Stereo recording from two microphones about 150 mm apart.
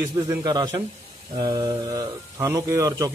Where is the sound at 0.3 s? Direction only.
25° right (ahead or behind).